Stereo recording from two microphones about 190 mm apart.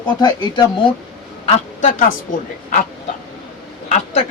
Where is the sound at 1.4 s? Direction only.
40° left (ahead or behind).